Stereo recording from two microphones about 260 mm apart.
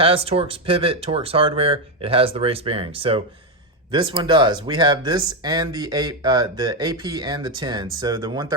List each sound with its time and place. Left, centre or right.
0.0 s speech: right